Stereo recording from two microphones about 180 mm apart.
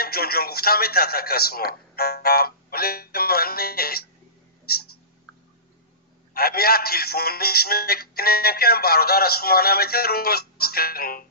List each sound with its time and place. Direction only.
0.0 s a man's voice: 60° left (ahead or behind)
6.3 s speech: 60° left (ahead or behind)